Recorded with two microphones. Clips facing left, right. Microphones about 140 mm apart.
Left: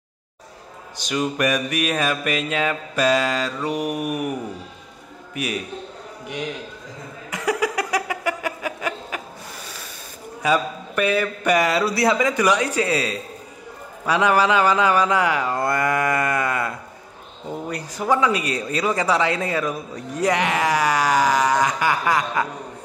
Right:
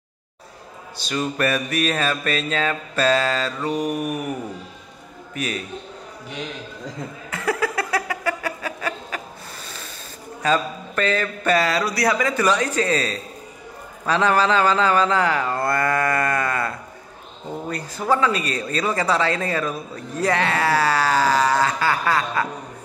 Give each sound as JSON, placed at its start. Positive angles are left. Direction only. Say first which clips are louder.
{"t": 0.9, "sound": "a man's voice", "louder": "left 1 dB", "side_deg": 15}
{"t": 7.2, "sound": "a sound", "louder": "left 1 dB", "side_deg": 15}
{"t": 10.4, "sound": "a man's voice", "louder": "even", "side_deg": 10}